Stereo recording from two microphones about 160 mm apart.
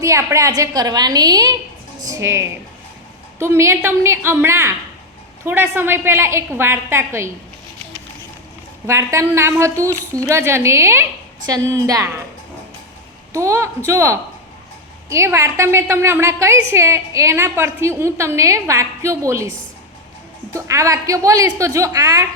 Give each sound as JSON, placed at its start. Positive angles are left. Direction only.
{"t": 0.0, "sound": "a woman's voice", "side_deg": -20}
{"t": 8.9, "sound": "a woman's voice", "side_deg": -20}
{"t": 13.3, "sound": "a woman's voice", "side_deg": -20}